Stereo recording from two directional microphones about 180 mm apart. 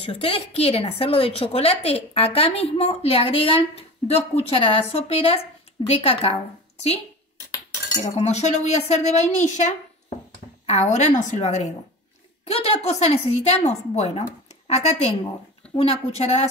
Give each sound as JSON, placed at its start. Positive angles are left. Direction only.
{"t": 0.0, "sound": "a woman's voice", "side_deg": 30}
{"t": 8.0, "sound": "a woman's voice", "side_deg": 35}